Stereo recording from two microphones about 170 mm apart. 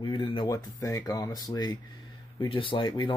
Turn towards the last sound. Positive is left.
turn(degrees=25)  # may be behind; listen again after turning